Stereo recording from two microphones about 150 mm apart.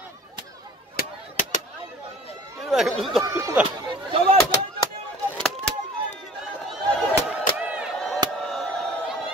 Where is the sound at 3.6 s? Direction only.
10° right (ahead or behind).